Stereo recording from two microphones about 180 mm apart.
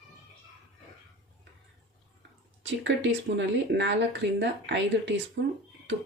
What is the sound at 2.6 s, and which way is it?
Speech, 90° right.